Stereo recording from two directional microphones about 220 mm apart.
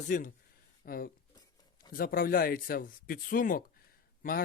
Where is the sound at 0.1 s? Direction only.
40° left (ahead or behind).